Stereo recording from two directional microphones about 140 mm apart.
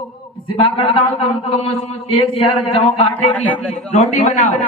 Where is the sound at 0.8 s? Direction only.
40° left (ahead or behind).